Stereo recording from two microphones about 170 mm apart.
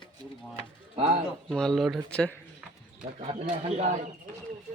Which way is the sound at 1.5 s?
5° left (ahead or behind).